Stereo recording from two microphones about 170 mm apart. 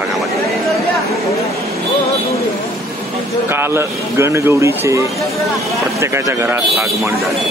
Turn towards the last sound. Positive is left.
turn(degrees=-15)  # may be behind; listen again after turning